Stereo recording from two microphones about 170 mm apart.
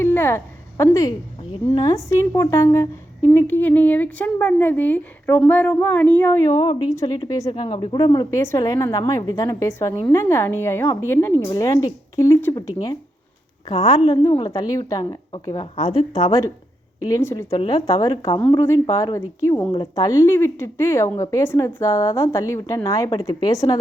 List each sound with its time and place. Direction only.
0.0 s a sound: 15° left (ahead or behind)
1.7 s a woman's voice: 20° left (ahead or behind)
15.7 s a woman's voice: 40° left (ahead or behind)
17.1 s a woman's voice: 20° left (ahead or behind)